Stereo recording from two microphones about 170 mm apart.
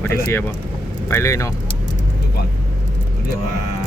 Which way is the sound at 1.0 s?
15° left (ahead or behind).